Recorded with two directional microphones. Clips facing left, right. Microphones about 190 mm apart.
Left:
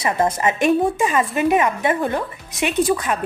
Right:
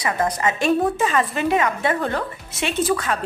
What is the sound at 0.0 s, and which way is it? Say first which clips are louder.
Speech: left 3 dB; 25° left (ahead or behind).